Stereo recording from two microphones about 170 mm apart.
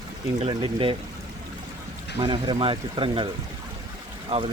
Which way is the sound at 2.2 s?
30° right (ahead or behind).